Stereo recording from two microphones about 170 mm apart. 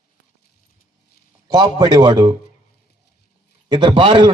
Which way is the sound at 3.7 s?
30° right (ahead or behind).